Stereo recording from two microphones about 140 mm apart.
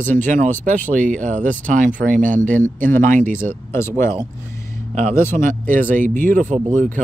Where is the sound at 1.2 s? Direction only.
60° right (ahead or behind).